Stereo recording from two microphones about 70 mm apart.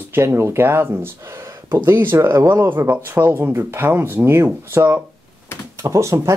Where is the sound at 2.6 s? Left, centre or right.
Right.